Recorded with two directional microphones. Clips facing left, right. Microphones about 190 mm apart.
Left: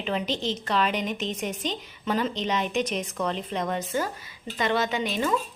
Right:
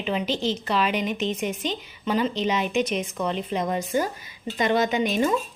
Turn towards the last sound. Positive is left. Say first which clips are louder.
# right 4 dB
turn(degrees=-20)  # may be behind; listen again after turning